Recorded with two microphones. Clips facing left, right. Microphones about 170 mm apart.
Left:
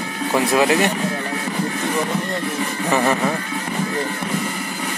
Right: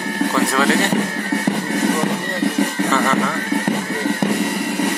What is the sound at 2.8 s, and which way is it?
Music, 15° left (ahead or behind).